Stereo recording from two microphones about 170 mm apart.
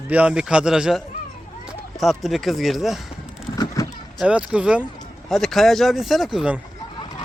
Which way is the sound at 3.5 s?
20° left (ahead or behind).